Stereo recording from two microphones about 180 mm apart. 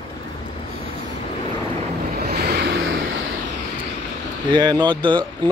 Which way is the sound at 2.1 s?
60° right (ahead or behind).